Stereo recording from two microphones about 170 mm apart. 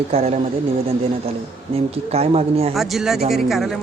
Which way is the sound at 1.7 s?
35° right (ahead or behind).